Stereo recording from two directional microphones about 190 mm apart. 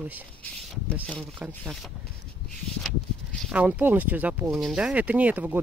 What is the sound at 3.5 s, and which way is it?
Speech, 5° right (ahead or behind).